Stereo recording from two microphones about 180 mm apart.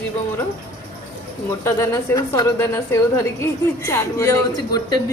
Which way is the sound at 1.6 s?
15° left (ahead or behind).